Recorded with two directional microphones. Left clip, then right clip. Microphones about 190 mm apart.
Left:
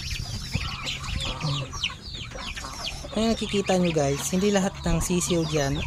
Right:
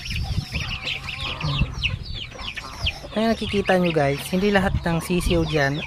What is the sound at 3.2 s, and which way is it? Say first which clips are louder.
Speech: right 3 dB; 10° right (ahead or behind).